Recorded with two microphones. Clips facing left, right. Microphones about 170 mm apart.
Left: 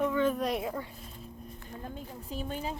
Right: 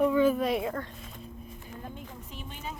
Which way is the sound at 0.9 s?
90° right.